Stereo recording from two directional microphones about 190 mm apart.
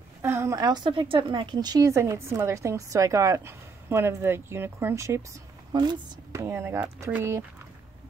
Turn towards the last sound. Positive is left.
turn(degrees=-15)  # may be behind; listen again after turning